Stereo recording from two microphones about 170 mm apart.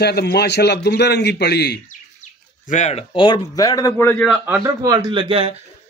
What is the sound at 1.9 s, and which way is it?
Bird, 45° left (ahead or behind).